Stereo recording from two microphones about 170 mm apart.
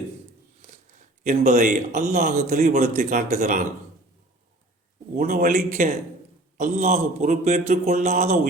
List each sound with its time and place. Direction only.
1.2 s a man's voice: 45° right (ahead or behind)
5.1 s a man's voice: 60° right (ahead or behind); by 8.4 s 40° right (ahead or behind)